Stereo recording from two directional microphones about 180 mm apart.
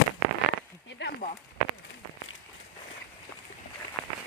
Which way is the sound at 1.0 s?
70° left (ahead or behind).